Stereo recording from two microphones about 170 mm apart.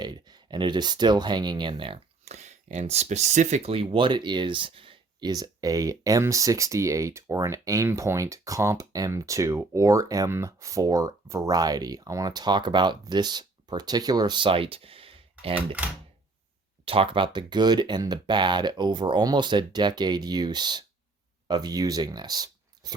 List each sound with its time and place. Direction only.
0.0 s speech: 25° right (ahead or behind)
16.8 s speech: 35° right (ahead or behind)